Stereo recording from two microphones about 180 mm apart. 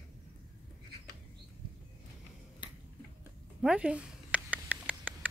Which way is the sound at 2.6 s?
25° left (ahead or behind).